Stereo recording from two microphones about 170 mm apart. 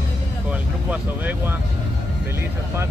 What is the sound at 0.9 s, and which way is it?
Speech, 10° right (ahead or behind).